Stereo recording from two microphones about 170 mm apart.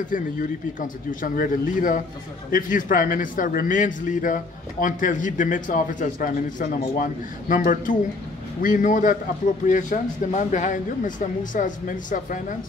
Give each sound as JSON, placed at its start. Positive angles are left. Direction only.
{"t": 0.1, "sound": "a man's voice", "side_deg": 50}